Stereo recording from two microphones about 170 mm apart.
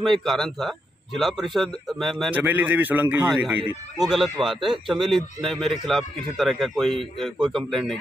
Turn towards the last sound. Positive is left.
turn(degrees=0)  # may be behind; listen again after turning